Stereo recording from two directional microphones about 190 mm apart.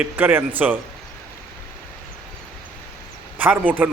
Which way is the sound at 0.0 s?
10° right (ahead or behind).